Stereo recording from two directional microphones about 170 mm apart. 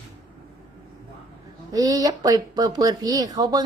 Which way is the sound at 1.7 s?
20° right (ahead or behind).